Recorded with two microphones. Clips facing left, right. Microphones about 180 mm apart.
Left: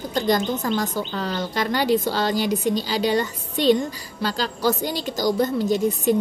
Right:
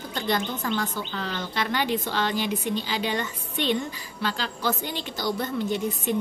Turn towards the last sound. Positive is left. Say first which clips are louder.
# left 7 dB
turn(degrees=40)  # may be behind; listen again after turning